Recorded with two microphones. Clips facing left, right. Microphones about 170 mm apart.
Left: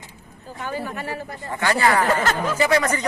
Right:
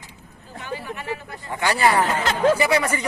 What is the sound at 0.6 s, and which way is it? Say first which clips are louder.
Speech: left 3 dB; 45° left (ahead or behind).